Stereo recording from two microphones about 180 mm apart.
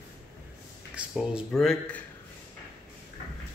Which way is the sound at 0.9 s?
5° right (ahead or behind).